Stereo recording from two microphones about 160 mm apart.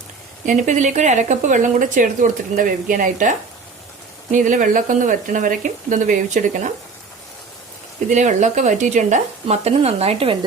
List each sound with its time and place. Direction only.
0.4 s speech: 50° right (ahead or behind)
8.0 s speech: 50° right (ahead or behind)